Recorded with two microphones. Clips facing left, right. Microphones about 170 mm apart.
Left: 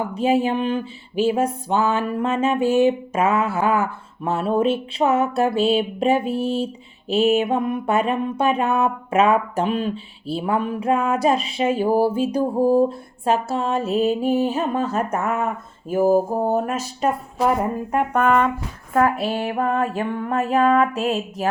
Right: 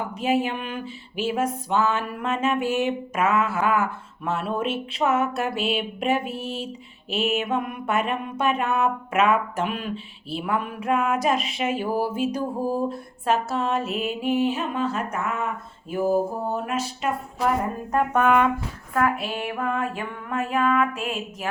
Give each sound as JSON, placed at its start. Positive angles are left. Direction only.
{"t": 0.1, "sound": "mantra", "side_deg": 30}
{"t": 15.9, "sound": "speech", "side_deg": 40}
{"t": 18.3, "sound": "speech", "side_deg": -5}
{"t": 18.9, "sound": "mantra", "side_deg": 35}